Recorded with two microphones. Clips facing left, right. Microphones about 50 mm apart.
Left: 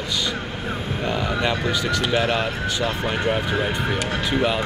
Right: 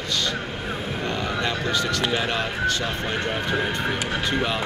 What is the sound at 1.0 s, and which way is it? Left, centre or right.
Speech, centre.